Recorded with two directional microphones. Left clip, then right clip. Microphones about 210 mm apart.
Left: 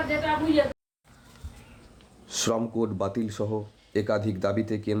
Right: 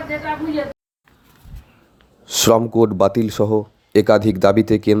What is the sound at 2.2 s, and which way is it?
Speech, 35° right (ahead or behind).